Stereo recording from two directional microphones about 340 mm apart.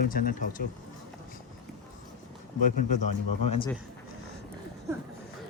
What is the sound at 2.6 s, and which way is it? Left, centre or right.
Speech, left.